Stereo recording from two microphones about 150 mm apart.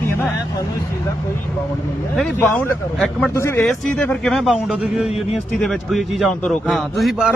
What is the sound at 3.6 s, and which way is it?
Speech, 5° left (ahead or behind).